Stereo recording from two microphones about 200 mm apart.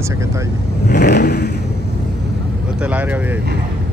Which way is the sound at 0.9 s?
55° left (ahead or behind).